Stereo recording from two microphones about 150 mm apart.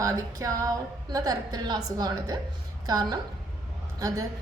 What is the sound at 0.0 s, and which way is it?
A woman's voice, 20° right (ahead or behind).